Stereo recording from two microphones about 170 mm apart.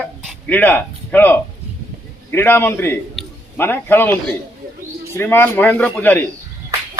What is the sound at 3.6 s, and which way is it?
Speech, 15° left (ahead or behind).